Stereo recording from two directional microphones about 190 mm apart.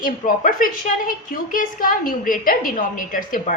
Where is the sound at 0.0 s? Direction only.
45° left (ahead or behind).